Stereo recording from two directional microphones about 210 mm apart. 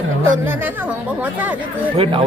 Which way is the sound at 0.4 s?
10° right (ahead or behind).